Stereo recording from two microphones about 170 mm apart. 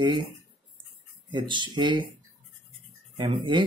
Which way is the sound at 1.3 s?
30° right (ahead or behind).